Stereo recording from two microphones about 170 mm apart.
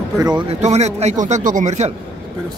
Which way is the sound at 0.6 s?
40° right (ahead or behind).